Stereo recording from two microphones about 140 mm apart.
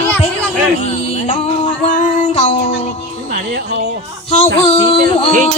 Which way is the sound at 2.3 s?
45° left (ahead or behind).